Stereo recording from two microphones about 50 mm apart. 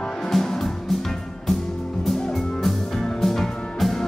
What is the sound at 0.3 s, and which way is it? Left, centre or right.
Music, centre.